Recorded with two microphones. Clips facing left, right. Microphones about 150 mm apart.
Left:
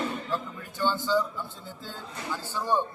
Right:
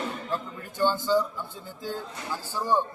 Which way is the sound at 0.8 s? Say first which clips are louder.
Right 2 dB; 15° right (ahead or behind).